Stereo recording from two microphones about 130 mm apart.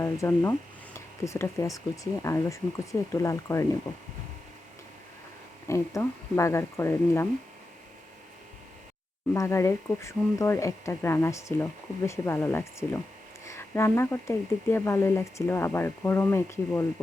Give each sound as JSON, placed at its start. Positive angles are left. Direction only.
{"t": 0.0, "sound": "speech", "side_deg": 20}
{"t": 5.6, "sound": "speech", "side_deg": 20}
{"t": 9.3, "sound": "speech", "side_deg": 20}